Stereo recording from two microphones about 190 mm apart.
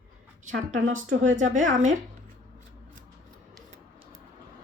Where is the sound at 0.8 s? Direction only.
90° right.